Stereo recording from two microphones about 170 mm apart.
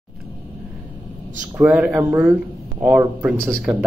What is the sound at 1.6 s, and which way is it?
Speech, 10° right (ahead or behind).